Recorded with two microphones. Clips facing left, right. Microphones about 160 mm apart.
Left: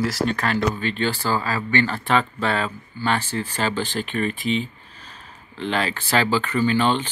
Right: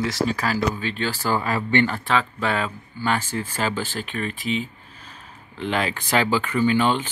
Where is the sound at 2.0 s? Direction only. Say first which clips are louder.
Left 2 dB; centre (ahead or behind).